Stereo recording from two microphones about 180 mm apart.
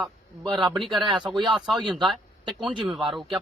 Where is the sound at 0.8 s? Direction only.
Centre (ahead or behind).